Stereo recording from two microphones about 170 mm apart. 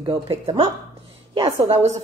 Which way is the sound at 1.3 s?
20° right (ahead or behind).